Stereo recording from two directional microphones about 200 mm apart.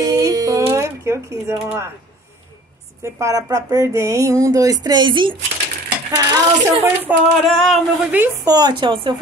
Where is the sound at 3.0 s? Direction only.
15° right (ahead or behind).